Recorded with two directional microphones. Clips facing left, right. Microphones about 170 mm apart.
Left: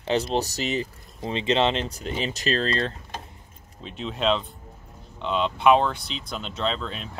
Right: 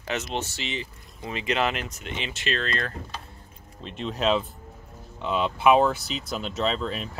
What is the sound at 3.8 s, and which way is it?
Speech, centre (ahead or behind).